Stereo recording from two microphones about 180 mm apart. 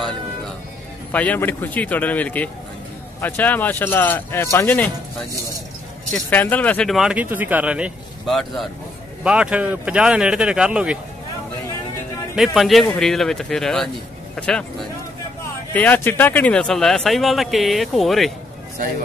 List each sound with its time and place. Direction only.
1.1 s speech: 10° left (ahead or behind)
6.1 s speech: 10° left (ahead or behind)
12.4 s speech: centre (ahead or behind)
15.7 s speech: 10° left (ahead or behind)